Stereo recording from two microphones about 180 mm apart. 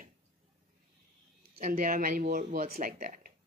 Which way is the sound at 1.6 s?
45° right (ahead or behind).